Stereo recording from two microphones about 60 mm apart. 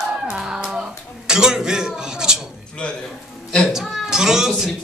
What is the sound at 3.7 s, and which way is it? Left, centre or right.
Music, centre.